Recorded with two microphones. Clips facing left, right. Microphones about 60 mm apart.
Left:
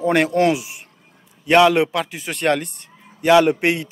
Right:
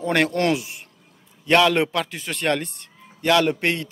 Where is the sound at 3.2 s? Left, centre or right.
Centre.